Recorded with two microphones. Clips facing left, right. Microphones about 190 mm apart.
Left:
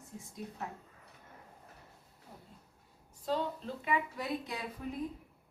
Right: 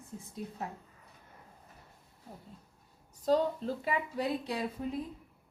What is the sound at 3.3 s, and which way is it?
A woman's voice, 40° right (ahead or behind).